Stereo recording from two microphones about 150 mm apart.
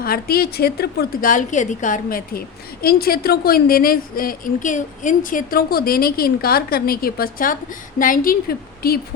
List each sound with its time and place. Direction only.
0.0 s a woman's voice: 85° left
2.8 s a woman's voice: 90° left
7.9 s a woman's voice: 65° left (ahead or behind); by 9.0 s 90° left